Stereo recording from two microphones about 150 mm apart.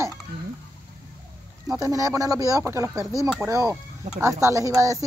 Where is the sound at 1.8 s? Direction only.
20° right (ahead or behind).